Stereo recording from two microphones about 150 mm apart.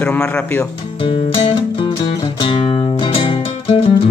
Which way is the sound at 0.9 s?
35° left (ahead or behind).